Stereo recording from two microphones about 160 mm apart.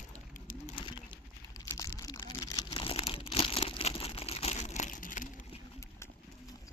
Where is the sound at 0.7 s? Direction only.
30° left (ahead or behind).